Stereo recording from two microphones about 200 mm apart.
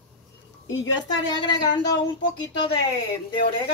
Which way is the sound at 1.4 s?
20° left (ahead or behind).